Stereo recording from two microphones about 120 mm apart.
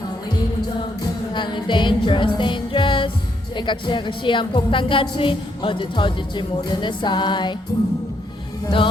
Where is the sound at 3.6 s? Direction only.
40° left (ahead or behind).